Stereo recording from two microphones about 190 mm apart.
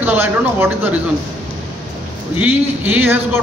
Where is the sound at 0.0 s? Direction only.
10° right (ahead or behind).